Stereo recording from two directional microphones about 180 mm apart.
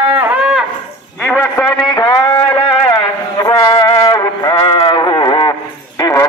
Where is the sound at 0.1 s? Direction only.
10° right (ahead or behind).